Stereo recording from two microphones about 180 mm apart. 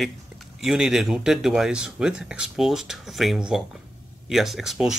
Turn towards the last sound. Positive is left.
turn(degrees=0)  # may be behind; listen again after turning